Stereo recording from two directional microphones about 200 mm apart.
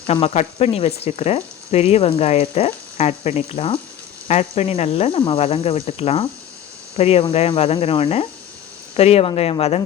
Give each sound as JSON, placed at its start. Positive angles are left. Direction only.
{"t": 0.1, "sound": "speech", "side_deg": 30}